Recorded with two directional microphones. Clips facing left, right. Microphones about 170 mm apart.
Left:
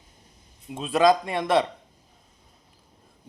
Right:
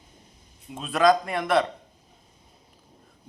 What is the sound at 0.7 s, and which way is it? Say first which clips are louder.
Speech: left 1 dB; 25° left (ahead or behind).